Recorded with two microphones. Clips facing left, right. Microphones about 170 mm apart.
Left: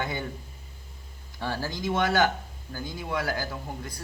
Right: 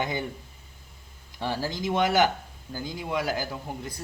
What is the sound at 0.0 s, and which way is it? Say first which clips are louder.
Speech: right 2 dB; 15° right (ahead or behind).